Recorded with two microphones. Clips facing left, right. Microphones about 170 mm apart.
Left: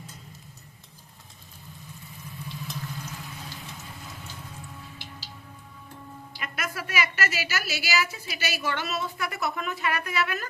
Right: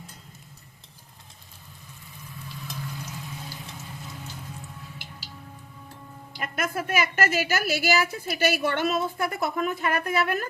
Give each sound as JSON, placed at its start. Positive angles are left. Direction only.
{"t": 6.4, "sound": "a woman's voice", "side_deg": -50}